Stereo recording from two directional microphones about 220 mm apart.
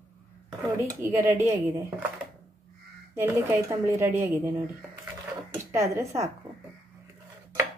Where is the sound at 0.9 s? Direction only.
10° right (ahead or behind).